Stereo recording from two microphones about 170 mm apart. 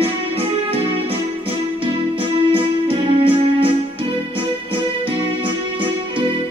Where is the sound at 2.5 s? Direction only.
35° right (ahead or behind).